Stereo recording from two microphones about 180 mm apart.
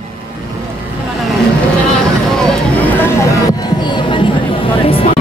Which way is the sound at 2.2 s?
5° left (ahead or behind).